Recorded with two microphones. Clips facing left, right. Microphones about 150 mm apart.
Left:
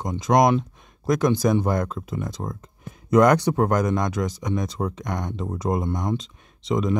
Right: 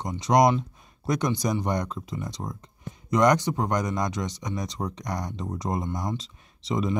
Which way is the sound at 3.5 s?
60° left (ahead or behind).